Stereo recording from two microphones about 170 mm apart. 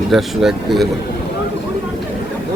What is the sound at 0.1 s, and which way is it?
Speech, centre (ahead or behind).